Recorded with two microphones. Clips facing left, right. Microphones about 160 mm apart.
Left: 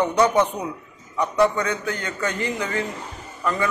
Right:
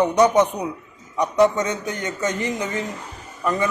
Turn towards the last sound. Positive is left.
turn(degrees=-20)  # may be behind; listen again after turning